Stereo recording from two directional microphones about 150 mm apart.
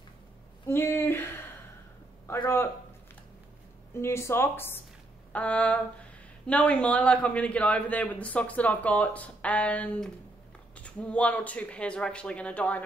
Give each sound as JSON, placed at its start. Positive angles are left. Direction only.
{"t": 0.7, "sound": "a sound", "side_deg": 15}
{"t": 2.4, "sound": "a man's voice", "side_deg": 15}
{"t": 3.9, "sound": "a man's voice", "side_deg": 15}